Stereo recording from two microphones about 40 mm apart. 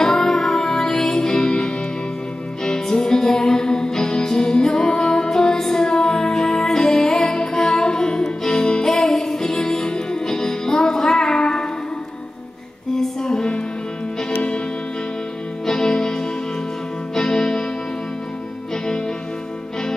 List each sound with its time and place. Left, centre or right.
0.0 s music: centre
12.9 s music: centre
15.6 s music: centre